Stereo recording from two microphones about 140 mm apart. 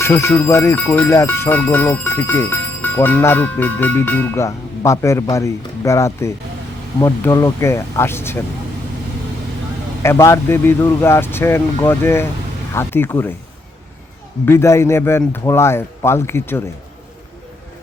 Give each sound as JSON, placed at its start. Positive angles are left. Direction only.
{"t": 0.0, "sound": "speech", "side_deg": 20}
{"t": 10.0, "sound": "speech", "side_deg": 20}
{"t": 14.4, "sound": "speech", "side_deg": 20}